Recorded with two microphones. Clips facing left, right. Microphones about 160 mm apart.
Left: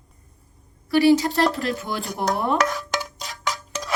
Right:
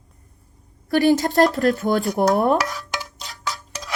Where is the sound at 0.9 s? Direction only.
45° right (ahead or behind).